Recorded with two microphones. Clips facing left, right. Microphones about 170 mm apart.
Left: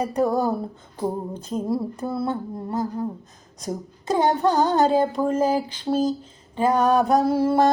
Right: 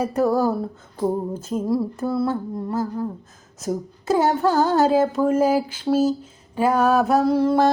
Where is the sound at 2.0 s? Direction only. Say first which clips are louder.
Right 4 dB; 20° left (ahead or behind).